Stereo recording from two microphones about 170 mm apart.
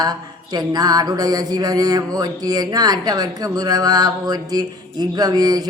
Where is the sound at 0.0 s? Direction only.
25° right (ahead or behind).